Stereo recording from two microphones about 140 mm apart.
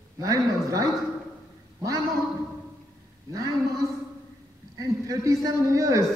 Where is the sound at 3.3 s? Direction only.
25° right (ahead or behind).